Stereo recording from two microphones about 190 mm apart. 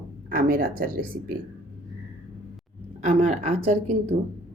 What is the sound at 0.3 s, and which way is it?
Speech, 50° right (ahead or behind).